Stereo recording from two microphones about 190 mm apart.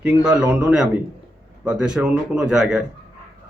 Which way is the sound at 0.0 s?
5° right (ahead or behind).